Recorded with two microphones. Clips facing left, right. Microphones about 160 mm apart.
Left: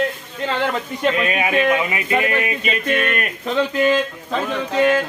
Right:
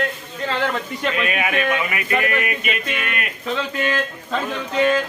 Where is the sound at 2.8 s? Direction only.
50° left (ahead or behind).